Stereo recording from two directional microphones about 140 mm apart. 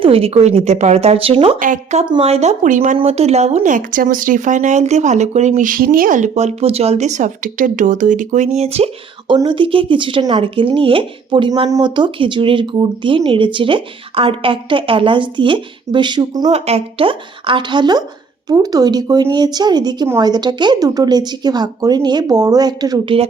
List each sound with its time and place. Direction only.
0.0 s speech: 45° right (ahead or behind)
1.5 s speech: 70° right (ahead or behind)
2.2 s speech: 50° right (ahead or behind)
3.0 s speech: 50° right (ahead or behind); by 16.5 s 30° right (ahead or behind)
16.5 s a woman's voice: 45° right (ahead or behind); by 23.1 s 30° right (ahead or behind)